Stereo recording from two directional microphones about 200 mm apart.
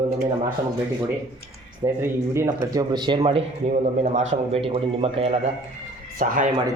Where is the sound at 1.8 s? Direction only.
15° right (ahead or behind).